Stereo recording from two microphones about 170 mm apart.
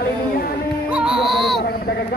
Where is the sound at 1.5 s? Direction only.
65° left (ahead or behind).